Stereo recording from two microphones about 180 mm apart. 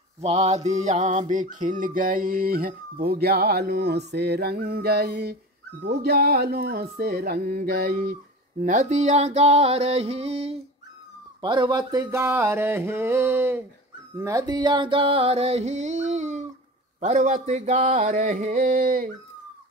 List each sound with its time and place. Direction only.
0.2 s mantra: 35° right (ahead or behind)
11.4 s a sound: 25° right (ahead or behind)
14.1 s music: 20° right (ahead or behind); by 19.1 s 50° right (ahead or behind)